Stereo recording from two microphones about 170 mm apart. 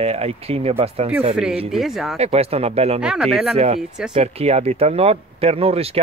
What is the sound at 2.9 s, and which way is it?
Speech, 5° right (ahead or behind).